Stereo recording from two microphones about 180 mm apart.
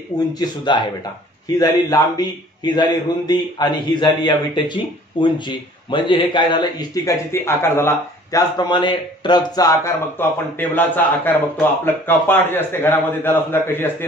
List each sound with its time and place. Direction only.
0.3 s a man's voice: 25° left (ahead or behind)